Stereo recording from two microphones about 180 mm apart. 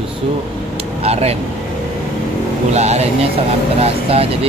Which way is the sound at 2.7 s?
35° right (ahead or behind).